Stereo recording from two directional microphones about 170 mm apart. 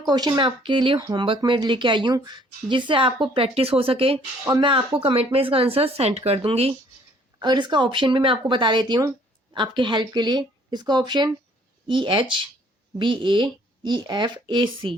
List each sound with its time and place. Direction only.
0.0 s speech: 25° right (ahead or behind)